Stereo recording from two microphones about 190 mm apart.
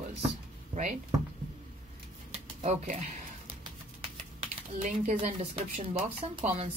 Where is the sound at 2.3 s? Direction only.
35° right (ahead or behind).